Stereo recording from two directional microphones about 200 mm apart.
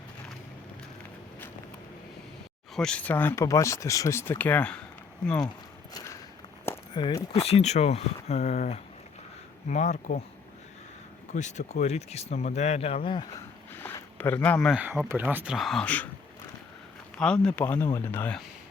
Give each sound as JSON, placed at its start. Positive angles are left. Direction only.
{"t": 2.7, "sound": "speech", "side_deg": 5}
{"t": 6.9, "sound": "speech", "side_deg": 20}
{"t": 11.3, "sound": "speech", "side_deg": 35}
{"t": 13.7, "sound": "speech", "side_deg": 10}
{"t": 17.2, "sound": "speech", "side_deg": 5}